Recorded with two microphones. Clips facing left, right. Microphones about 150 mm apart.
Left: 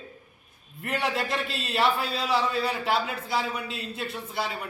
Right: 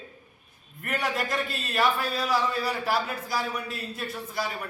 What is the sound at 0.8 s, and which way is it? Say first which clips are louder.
A man's voice: left 1 dB; 25° left (ahead or behind).